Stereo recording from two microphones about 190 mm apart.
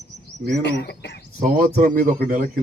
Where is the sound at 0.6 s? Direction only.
65° left (ahead or behind).